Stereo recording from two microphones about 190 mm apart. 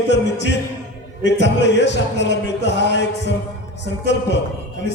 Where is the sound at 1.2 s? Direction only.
65° left (ahead or behind).